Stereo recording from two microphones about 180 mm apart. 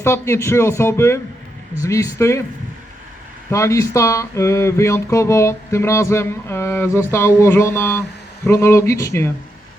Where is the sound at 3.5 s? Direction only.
15° left (ahead or behind).